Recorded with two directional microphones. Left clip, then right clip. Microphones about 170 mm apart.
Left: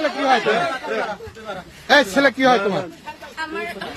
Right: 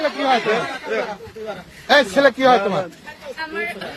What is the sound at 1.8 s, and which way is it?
Speech, 30° left (ahead or behind).